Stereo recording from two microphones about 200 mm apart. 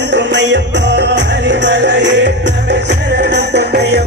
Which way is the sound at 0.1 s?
60° right (ahead or behind).